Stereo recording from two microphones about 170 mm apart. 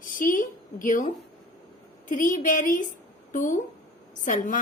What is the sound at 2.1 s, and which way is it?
A woman's voice, 50° left (ahead or behind).